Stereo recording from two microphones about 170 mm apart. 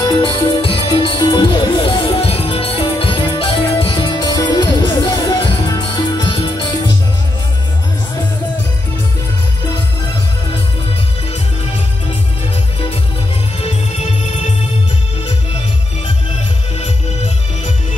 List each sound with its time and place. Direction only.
0.0 s music: 25° left (ahead or behind)
13.6 s music: 40° left (ahead or behind)